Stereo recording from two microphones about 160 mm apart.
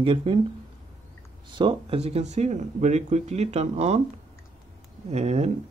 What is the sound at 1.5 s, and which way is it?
Speech, 35° right (ahead or behind).